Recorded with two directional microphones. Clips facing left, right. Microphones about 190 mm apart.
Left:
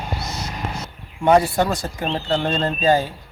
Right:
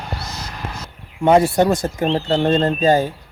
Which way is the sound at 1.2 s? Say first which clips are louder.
Right 3 dB; 20° right (ahead or behind).